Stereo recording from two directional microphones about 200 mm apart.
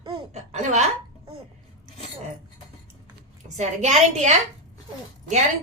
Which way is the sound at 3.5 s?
35° right (ahead or behind).